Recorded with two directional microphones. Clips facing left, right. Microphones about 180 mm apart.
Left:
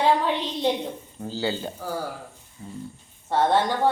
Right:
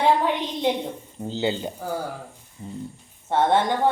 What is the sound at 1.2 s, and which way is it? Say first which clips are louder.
Speech: right 2 dB; 20° right (ahead or behind).